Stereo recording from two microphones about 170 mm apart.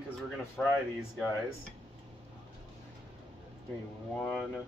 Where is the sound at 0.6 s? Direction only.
5° left (ahead or behind).